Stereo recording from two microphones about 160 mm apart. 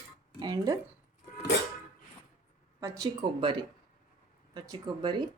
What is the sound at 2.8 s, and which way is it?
Speech, 20° right (ahead or behind).